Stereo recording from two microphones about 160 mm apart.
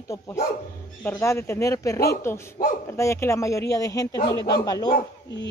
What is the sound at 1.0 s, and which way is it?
Speech, 15° left (ahead or behind).